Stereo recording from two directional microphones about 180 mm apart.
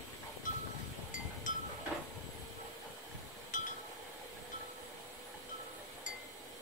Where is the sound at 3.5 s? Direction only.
45° left (ahead or behind).